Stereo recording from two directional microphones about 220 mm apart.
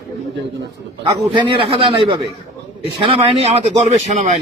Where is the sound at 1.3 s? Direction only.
20° right (ahead or behind).